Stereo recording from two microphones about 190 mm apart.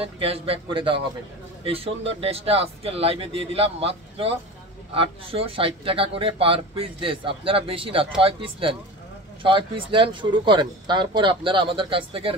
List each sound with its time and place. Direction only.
0.0 s speech: 30° right (ahead or behind)